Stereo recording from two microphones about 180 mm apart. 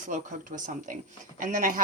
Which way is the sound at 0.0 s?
45° right (ahead or behind).